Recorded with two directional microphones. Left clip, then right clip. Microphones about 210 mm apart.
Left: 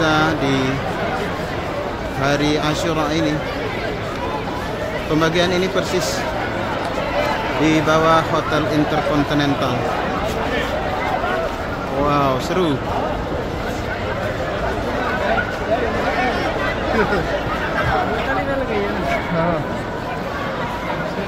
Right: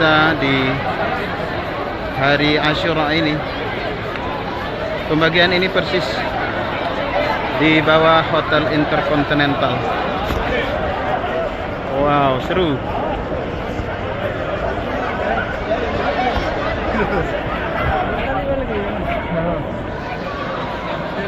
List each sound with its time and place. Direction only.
0.0 s speech: 20° left (ahead or behind)
2.2 s speech: 25° left (ahead or behind)
5.2 s speech: 25° left (ahead or behind)
7.6 s speech: 25° left (ahead or behind)
12.1 s speech: 25° left (ahead or behind)